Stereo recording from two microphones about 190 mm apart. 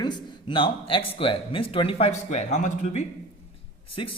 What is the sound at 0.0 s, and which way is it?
Speech, 25° left (ahead or behind).